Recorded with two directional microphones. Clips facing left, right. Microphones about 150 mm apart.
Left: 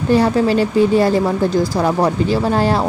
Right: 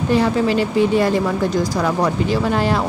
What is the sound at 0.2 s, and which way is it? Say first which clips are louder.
Speech: left 3 dB; 35° left (ahead or behind).